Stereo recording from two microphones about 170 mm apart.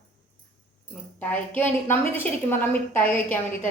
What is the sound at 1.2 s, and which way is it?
A woman's voice, 10° left (ahead or behind).